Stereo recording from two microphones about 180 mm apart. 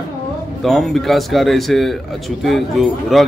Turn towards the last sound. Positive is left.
turn(degrees=0)  # may be behind; listen again after turning